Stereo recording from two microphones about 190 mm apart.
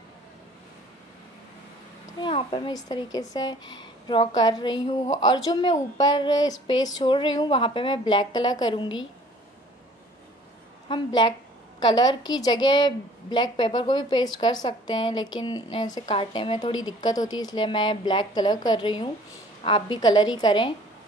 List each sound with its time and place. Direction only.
2.1 s a woman's voice: 25° left (ahead or behind)
10.9 s a woman's voice: 25° left (ahead or behind)